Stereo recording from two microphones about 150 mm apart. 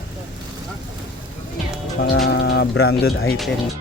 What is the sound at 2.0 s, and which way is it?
Speech, 90° left.